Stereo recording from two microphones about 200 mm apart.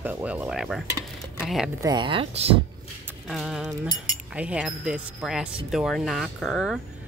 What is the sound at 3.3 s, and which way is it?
Speech, centre (ahead or behind).